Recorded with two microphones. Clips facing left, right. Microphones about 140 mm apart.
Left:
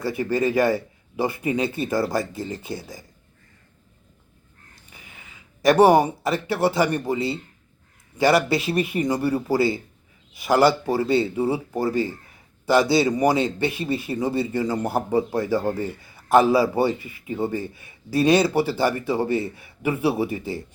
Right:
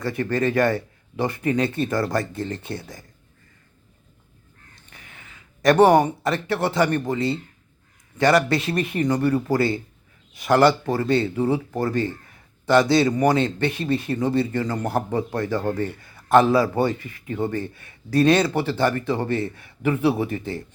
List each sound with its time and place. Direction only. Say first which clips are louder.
0.0 s speech: even; 5° left (ahead or behind)
4.9 s a sound: even; 5° left (ahead or behind)
5.6 s speech: even; 5° left (ahead or behind)